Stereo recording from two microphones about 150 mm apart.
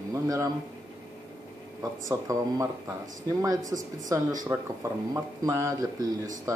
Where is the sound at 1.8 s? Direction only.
25° right (ahead or behind).